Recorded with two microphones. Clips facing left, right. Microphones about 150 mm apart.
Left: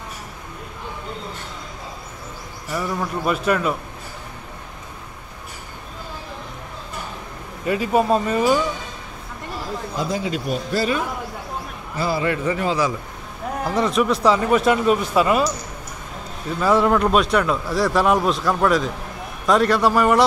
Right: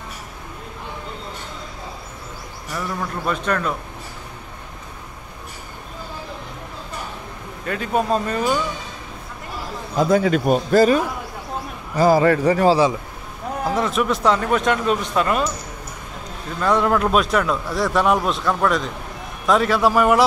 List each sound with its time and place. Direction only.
2.7 s a man's voice: 5° left (ahead or behind)
7.6 s speech: 5° left (ahead or behind)
9.9 s a man's voice: 55° right (ahead or behind); by 12.9 s 30° right (ahead or behind)
13.7 s speech: centre (ahead or behind)
16.5 s speech: 5° left (ahead or behind)